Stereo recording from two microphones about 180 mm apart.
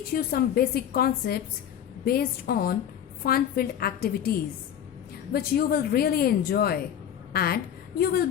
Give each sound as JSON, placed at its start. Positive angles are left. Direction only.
{"t": 0.1, "sound": "a woman's voice", "side_deg": 60}